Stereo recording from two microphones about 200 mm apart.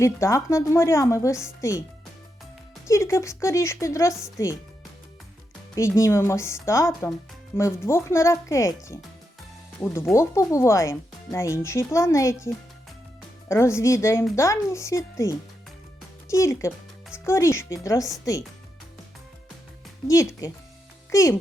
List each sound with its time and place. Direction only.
0.0 s speech: 15° left (ahead or behind)
2.8 s speech: 15° left (ahead or behind)
5.7 s speech: 15° left (ahead or behind)
13.5 s speech: 15° left (ahead or behind)
20.1 s a child's voice: 15° left (ahead or behind)